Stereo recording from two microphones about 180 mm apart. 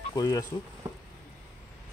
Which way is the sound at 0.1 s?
20° left (ahead or behind).